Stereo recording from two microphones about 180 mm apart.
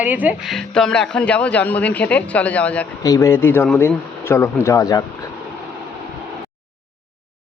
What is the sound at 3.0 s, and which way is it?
Speech, 20° left (ahead or behind).